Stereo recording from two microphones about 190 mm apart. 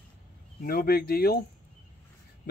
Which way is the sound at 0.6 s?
50° left (ahead or behind).